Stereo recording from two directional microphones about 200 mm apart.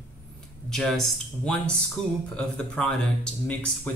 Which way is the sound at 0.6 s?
Centre (ahead or behind).